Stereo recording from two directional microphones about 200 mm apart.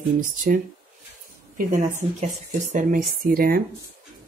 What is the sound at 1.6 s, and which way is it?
Speech, 40° right (ahead or behind).